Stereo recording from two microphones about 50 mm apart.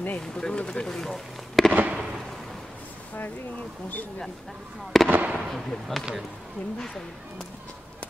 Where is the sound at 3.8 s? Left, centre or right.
Left.